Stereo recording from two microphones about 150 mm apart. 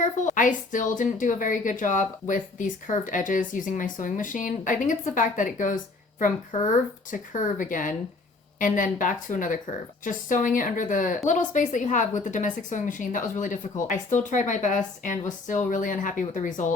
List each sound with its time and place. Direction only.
0.0 s a woman's voice: 55° left (ahead or behind)